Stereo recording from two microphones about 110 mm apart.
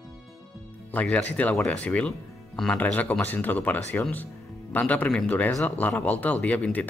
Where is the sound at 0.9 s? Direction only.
10° left (ahead or behind).